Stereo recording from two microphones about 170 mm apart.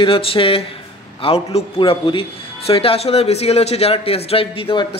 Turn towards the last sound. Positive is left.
turn(degrees=30)  # may be behind; listen again after turning